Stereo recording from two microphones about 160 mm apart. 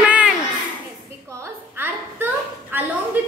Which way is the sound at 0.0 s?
5° right (ahead or behind).